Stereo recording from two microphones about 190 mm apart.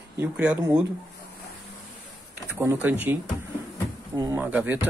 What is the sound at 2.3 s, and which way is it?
Speech, 10° right (ahead or behind).